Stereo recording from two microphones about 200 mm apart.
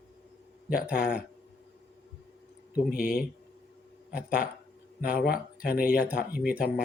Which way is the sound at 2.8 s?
50° left (ahead or behind).